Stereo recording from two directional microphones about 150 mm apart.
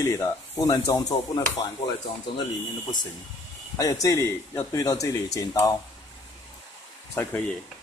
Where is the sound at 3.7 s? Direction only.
25° left (ahead or behind).